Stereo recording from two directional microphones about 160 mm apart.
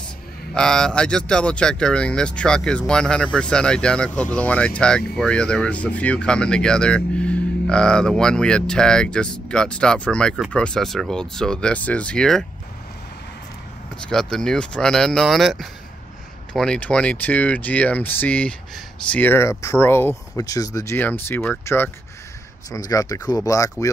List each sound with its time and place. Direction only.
0.6 s speech: 5° left (ahead or behind)
14.0 s speech: 5° left (ahead or behind); by 23.9 s 20° left (ahead or behind)